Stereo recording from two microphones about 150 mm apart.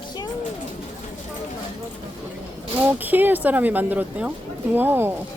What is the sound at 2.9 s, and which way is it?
Speech, 10° right (ahead or behind).